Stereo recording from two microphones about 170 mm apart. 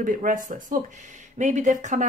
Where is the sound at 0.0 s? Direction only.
50° right (ahead or behind).